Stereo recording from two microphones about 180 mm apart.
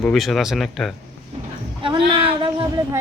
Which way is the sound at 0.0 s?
Centre (ahead or behind).